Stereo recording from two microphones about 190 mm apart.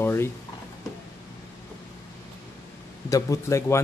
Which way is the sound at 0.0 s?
10° left (ahead or behind).